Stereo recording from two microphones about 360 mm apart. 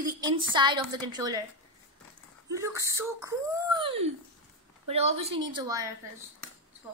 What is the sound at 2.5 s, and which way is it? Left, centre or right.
A woman's voice, centre.